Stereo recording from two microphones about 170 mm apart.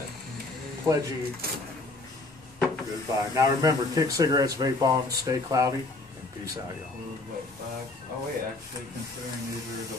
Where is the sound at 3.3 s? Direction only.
20° right (ahead or behind).